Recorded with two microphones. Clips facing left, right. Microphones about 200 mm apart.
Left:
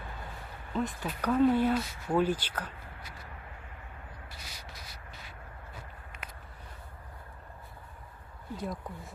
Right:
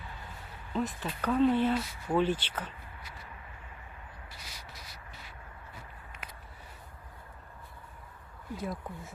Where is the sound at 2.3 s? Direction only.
40° left (ahead or behind).